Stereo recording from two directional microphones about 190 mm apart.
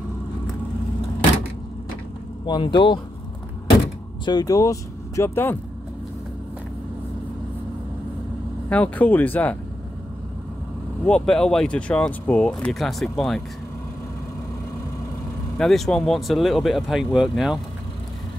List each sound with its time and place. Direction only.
2.4 s speech: 25° left (ahead or behind)
4.2 s speech: 20° left (ahead or behind)
8.6 s speech: 5° left (ahead or behind)
11.1 s speech: 5° left (ahead or behind)
15.5 s speech: centre (ahead or behind)